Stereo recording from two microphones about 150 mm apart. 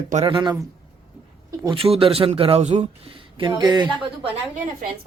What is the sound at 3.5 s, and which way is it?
Speech, 25° right (ahead or behind).